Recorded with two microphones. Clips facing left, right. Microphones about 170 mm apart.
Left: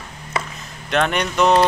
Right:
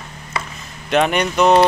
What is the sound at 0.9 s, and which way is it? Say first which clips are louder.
Speech: right 3 dB; 5° right (ahead or behind).